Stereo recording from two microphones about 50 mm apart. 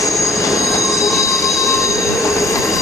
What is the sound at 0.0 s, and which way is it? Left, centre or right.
Train wheels squealing, left.